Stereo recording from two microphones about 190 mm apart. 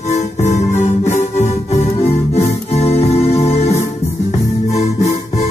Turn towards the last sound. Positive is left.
turn(degrees=35)  # may be behind; listen again after turning